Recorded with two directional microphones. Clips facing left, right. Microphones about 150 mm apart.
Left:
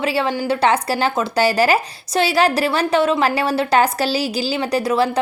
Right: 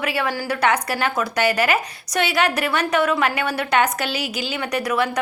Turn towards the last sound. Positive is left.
turn(degrees=30)  # may be behind; listen again after turning